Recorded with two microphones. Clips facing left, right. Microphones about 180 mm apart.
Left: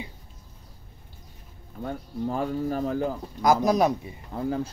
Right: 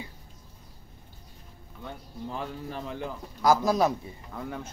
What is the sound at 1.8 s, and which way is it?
Speech, 45° left (ahead or behind).